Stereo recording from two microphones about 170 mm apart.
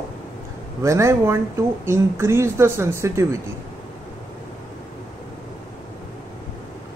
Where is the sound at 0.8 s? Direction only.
15° right (ahead or behind).